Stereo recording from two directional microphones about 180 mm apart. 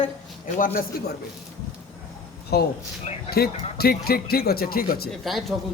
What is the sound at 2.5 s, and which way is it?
A man's voice, 60° left (ahead or behind).